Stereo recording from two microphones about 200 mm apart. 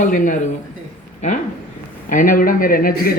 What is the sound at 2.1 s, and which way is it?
Speech, 45° left (ahead or behind).